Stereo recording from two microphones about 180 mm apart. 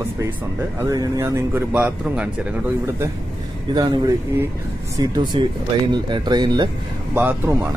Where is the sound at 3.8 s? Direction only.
20° right (ahead or behind).